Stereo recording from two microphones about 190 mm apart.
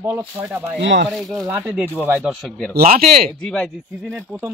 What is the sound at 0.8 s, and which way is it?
Speech, 70° right (ahead or behind).